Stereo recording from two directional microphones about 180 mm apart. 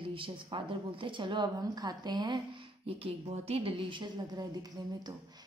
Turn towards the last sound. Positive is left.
turn(degrees=-20)  # may be behind; listen again after turning